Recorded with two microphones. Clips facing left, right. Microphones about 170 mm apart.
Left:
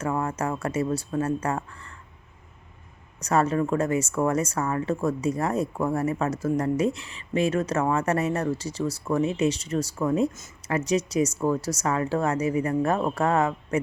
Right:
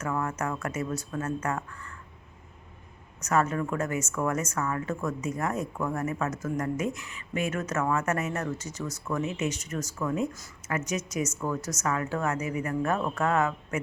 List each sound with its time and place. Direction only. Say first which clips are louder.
0.0 s speech: left 3 dB; 30° left (ahead or behind)
3.2 s speech: left 4 dB; 30° left (ahead or behind)